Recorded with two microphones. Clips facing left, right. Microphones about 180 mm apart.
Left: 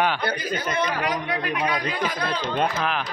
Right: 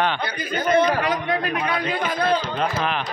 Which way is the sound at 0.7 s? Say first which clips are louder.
Right 10 dB; 50° right (ahead or behind).